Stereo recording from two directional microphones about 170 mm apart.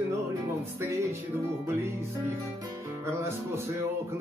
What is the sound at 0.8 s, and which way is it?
Music, 15° right (ahead or behind).